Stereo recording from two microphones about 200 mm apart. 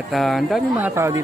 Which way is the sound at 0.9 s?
15° right (ahead or behind).